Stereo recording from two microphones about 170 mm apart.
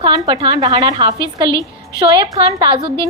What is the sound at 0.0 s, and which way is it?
A woman's voice, 30° right (ahead or behind).